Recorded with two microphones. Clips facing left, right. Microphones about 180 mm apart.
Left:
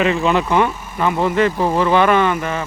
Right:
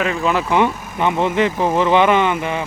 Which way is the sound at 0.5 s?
20° right (ahead or behind).